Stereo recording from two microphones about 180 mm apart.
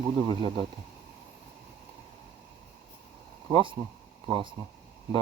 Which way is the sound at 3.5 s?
30° right (ahead or behind).